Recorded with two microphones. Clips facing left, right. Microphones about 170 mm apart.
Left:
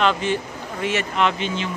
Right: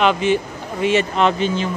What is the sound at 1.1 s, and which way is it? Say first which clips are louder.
Speech: right 4 dB; 40° right (ahead or behind).